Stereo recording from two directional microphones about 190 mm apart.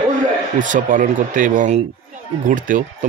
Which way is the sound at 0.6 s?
45° right (ahead or behind).